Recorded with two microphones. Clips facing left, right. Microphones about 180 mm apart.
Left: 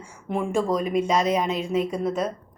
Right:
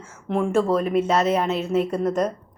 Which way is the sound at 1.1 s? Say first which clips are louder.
Right 2 dB; 10° left (ahead or behind).